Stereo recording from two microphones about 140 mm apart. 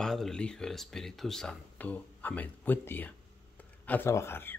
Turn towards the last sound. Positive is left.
turn(degrees=15)  # may be behind; listen again after turning